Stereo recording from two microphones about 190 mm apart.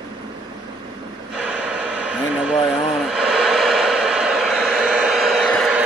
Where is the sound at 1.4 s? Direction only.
5° right (ahead or behind).